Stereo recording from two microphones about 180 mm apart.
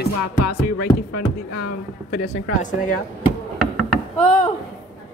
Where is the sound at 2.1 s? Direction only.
45° left (ahead or behind).